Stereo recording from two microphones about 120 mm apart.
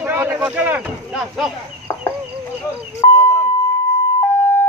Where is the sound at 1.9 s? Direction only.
25° left (ahead or behind).